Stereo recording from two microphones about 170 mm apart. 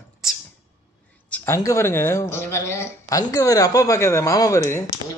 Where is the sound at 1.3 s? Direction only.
10° left (ahead or behind).